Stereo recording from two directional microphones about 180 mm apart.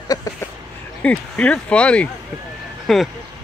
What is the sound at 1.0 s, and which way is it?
Speech, 5° left (ahead or behind).